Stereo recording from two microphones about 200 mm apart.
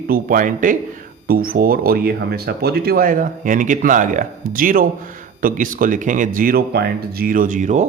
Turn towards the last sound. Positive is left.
turn(degrees=-40)  # may be behind; listen again after turning